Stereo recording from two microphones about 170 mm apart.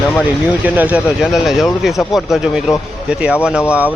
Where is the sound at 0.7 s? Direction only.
10° right (ahead or behind).